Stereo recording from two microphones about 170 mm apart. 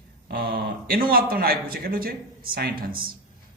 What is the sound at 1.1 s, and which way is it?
A man's voice, 60° right (ahead or behind).